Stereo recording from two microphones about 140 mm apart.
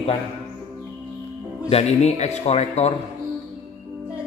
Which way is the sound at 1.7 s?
50° left (ahead or behind).